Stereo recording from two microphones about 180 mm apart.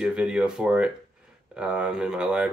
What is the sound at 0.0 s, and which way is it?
Speech, 5° right (ahead or behind).